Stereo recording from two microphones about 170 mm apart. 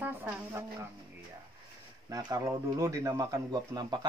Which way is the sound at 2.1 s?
20° right (ahead or behind).